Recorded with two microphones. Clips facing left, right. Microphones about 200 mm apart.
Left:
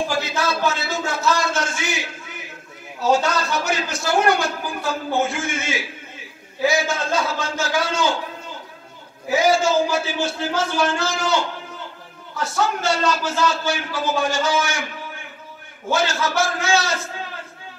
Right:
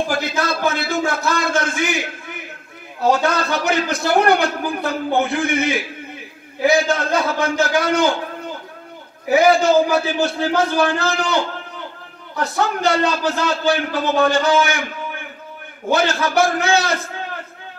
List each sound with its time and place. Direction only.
0.4 s a sound: 55° right (ahead or behind)
3.0 s a man's voice: 60° right (ahead or behind)
9.3 s a man's voice: 60° right (ahead or behind)
15.9 s a man's voice: 60° right (ahead or behind)